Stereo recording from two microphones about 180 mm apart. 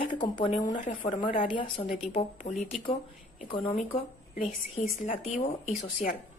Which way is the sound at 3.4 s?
30° left (ahead or behind).